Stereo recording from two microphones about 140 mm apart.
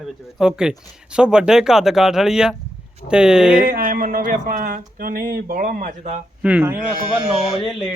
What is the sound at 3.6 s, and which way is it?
Speech, 90° right.